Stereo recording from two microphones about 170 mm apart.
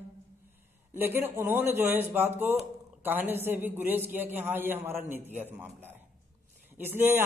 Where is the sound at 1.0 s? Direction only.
15° right (ahead or behind).